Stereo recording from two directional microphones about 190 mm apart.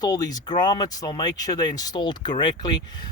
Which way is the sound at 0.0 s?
20° left (ahead or behind).